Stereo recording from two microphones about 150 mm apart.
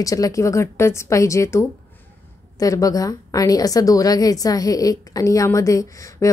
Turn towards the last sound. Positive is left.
turn(degrees=20)  # may be behind; listen again after turning